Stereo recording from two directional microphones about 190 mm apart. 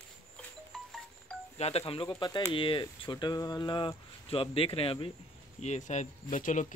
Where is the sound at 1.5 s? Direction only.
35° left (ahead or behind).